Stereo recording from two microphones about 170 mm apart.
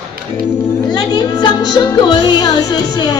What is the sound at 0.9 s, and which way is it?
Speech, 25° left (ahead or behind).